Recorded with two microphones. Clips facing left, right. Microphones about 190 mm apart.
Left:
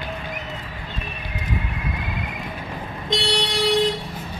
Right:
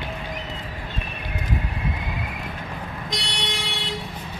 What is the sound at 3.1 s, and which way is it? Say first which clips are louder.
Vehicle: left 10 dB; 30° left (ahead or behind).